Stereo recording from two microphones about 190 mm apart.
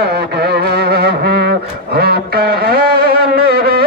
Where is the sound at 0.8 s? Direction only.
55° right (ahead or behind).